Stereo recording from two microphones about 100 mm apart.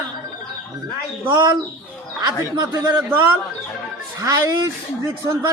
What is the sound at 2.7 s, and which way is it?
Speech, 20° right (ahead or behind).